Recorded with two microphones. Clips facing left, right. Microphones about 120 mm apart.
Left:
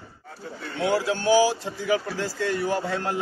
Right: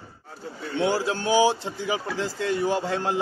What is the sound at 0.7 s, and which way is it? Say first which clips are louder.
A man's voice: even; 25° right (ahead or behind).